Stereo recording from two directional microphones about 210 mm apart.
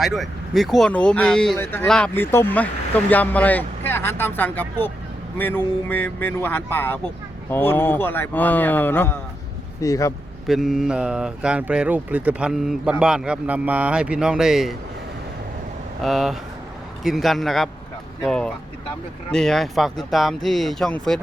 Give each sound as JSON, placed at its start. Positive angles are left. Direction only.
{"t": 0.0, "sound": "speech", "side_deg": 0}
{"t": 10.4, "sound": "speech", "side_deg": 0}
{"t": 16.0, "sound": "speech", "side_deg": 0}